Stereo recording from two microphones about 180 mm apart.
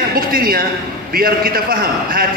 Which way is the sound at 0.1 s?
55° right (ahead or behind).